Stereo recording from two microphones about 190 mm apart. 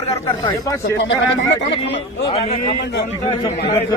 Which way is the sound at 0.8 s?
75° left (ahead or behind).